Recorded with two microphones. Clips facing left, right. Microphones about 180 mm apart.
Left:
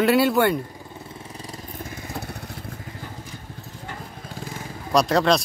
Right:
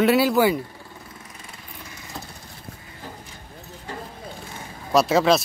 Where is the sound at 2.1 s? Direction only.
65° left (ahead or behind).